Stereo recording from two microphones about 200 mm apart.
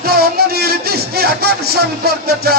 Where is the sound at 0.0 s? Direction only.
50° right (ahead or behind).